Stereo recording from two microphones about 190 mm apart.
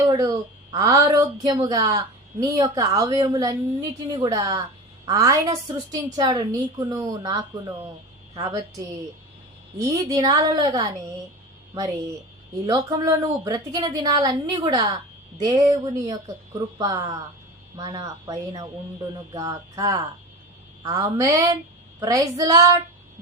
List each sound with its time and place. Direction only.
0.7 s child singing: 15° right (ahead or behind)
1.1 s a woman's voice: 20° right (ahead or behind)
11.7 s child singing: 15° right (ahead or behind)
12.6 s a woman's voice: 15° right (ahead or behind)
22.0 s child singing: 20° right (ahead or behind)